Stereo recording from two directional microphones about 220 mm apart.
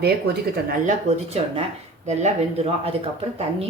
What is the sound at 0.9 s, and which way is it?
Speech, 30° right (ahead or behind).